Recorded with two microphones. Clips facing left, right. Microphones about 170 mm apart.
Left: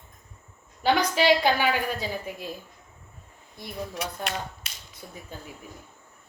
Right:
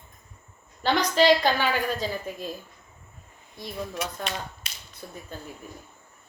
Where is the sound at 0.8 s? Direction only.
10° left (ahead or behind).